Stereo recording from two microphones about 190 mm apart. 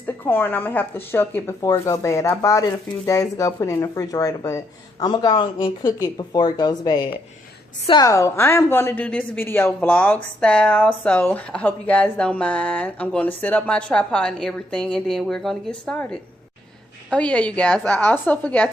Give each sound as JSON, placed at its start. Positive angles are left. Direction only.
{"t": 0.0, "sound": "speech", "side_deg": 10}